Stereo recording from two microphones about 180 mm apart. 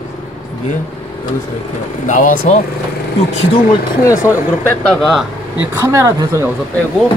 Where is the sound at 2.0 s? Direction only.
50° left (ahead or behind).